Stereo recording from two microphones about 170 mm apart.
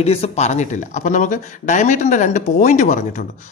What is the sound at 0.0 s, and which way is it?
Speech, 40° left (ahead or behind).